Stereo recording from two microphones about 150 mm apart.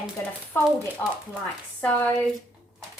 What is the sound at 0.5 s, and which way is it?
Speech, 15° left (ahead or behind).